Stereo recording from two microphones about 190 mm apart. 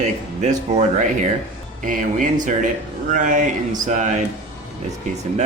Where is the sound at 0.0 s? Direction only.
40° right (ahead or behind).